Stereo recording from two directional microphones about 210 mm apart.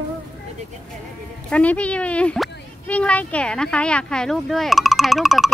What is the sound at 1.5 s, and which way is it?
Speech, 5° left (ahead or behind).